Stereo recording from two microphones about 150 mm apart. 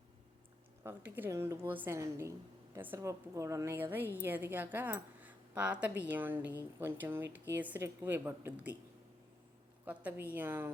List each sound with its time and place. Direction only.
0.9 s a woman's voice: 10° right (ahead or behind)
5.2 s a sound: 10° right (ahead or behind)
6.1 s a woman's voice: 15° right (ahead or behind)
9.8 s a woman's voice: 10° right (ahead or behind)